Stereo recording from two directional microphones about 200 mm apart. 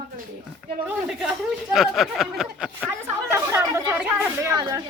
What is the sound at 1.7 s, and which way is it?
Speech, centre (ahead or behind).